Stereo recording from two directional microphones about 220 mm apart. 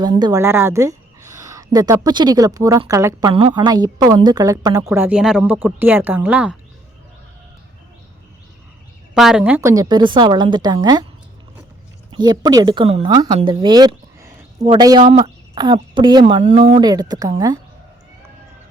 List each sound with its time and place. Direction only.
0.0 s speech: 20° right (ahead or behind)
9.1 s speech: 5° right (ahead or behind); by 11.0 s 20° right (ahead or behind)
12.1 s speech: 20° right (ahead or behind)
16.8 s speech: 20° right (ahead or behind)